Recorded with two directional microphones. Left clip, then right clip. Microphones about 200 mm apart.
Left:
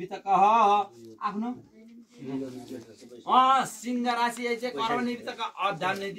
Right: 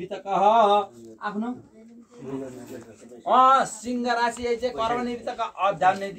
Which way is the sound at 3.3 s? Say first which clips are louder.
Right 4 dB; 55° left (ahead or behind).